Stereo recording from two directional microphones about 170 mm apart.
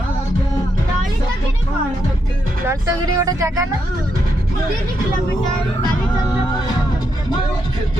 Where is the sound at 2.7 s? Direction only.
20° right (ahead or behind).